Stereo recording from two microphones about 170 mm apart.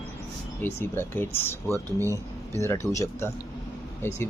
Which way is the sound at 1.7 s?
20° right (ahead or behind).